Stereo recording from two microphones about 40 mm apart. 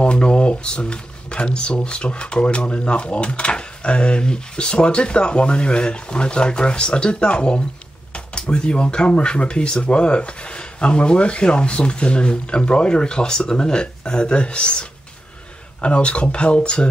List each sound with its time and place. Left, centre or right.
0.0 s speech: left